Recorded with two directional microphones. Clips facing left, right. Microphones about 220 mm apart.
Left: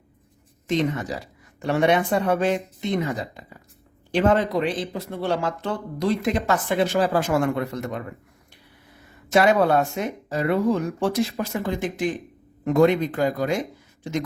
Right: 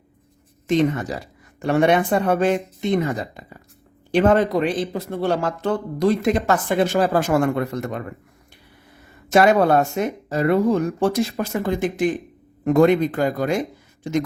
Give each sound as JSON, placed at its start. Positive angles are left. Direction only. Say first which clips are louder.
{"t": 1.5, "sound": "speech", "louder": "right 3 dB", "side_deg": -50}
{"t": 9.3, "sound": "speech", "louder": "right 3 dB", "side_deg": -45}